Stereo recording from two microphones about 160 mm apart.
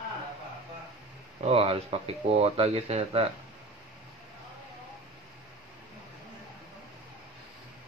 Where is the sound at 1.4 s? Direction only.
35° right (ahead or behind).